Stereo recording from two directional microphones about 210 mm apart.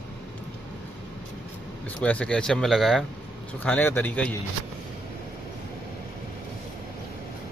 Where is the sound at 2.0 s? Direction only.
5° left (ahead or behind).